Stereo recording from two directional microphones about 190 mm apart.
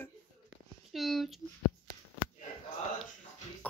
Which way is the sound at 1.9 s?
45° right (ahead or behind).